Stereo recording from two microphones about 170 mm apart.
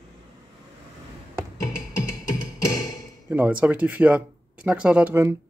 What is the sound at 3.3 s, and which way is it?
Speech, 10° right (ahead or behind).